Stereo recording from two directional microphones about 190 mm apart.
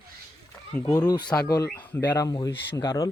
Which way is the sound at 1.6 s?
10° left (ahead or behind).